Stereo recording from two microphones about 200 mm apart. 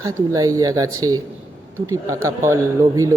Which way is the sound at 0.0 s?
15° right (ahead or behind).